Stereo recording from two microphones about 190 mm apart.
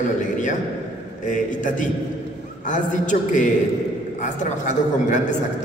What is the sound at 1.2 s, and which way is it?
A man's voice, 40° left (ahead or behind).